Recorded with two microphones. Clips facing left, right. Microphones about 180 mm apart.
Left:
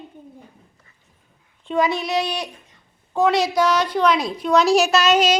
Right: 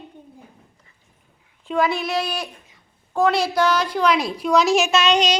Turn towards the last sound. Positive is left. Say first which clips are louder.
# left 2 dB
turn(degrees=5)  # may be behind; listen again after turning